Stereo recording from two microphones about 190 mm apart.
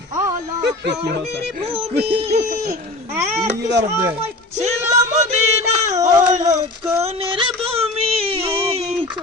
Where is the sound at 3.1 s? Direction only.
15° right (ahead or behind).